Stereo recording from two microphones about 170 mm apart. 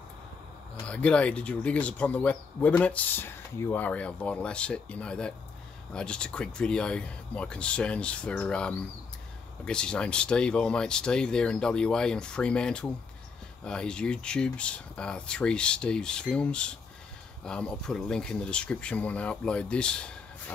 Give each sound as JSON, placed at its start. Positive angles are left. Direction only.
{"t": 0.8, "sound": "speech", "side_deg": 5}